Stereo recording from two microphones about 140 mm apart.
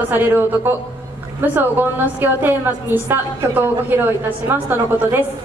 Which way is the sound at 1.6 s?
15° right (ahead or behind).